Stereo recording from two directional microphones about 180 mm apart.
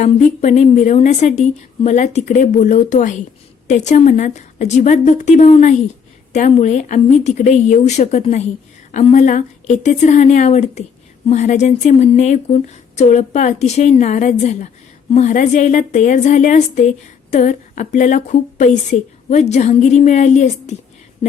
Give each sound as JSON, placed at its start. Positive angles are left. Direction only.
{"t": 0.0, "sound": "a woman's voice", "side_deg": 40}